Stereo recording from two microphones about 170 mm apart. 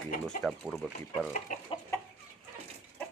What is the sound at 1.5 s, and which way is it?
Chicken, 50° left (ahead or behind).